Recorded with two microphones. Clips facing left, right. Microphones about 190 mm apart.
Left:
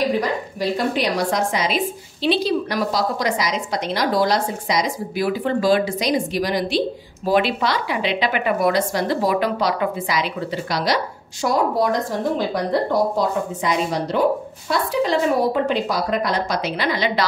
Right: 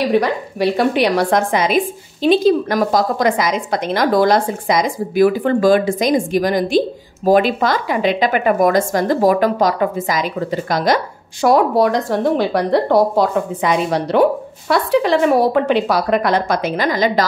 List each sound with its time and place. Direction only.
0.1 s a woman's voice: 70° right (ahead or behind); by 11.0 s 50° right (ahead or behind)
11.4 s speech: 65° right (ahead or behind); by 17.2 s 45° right (ahead or behind)